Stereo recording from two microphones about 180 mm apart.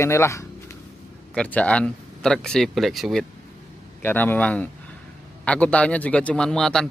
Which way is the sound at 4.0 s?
10° left (ahead or behind).